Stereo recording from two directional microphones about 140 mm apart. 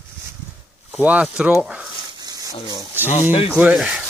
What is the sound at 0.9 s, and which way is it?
Speech, 5° right (ahead or behind).